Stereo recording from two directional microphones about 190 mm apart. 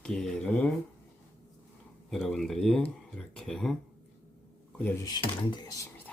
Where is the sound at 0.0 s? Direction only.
5° left (ahead or behind).